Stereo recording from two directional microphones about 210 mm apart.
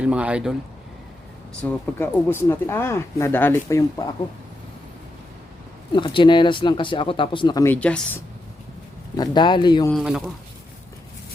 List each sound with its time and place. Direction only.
0.0 s speech: 5° right (ahead or behind)
2.0 s speech: 10° left (ahead or behind)
5.9 s speech: 25° left (ahead or behind); by 8.2 s 5° left (ahead or behind)
9.1 s speech: 20° left (ahead or behind)
9.9 s speech: centre (ahead or behind)